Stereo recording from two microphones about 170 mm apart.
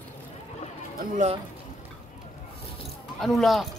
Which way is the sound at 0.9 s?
45° right (ahead or behind).